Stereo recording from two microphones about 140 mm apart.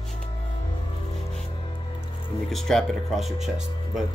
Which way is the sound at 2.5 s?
Centre (ahead or behind).